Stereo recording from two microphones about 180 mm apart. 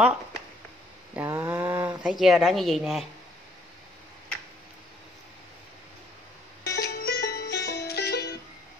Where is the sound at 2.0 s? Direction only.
Centre (ahead or behind).